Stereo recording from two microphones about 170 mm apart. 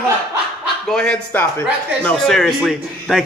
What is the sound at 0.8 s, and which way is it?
A man's voice, 5° left (ahead or behind).